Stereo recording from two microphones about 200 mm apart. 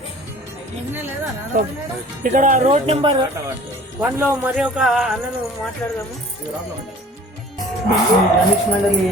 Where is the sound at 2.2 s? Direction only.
40° right (ahead or behind); by 3.2 s 20° right (ahead or behind).